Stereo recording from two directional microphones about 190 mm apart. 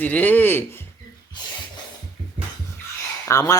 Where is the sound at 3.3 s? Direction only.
15° left (ahead or behind).